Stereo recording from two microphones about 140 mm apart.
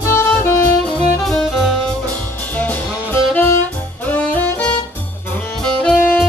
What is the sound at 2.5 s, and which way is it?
Music, 10° left (ahead or behind).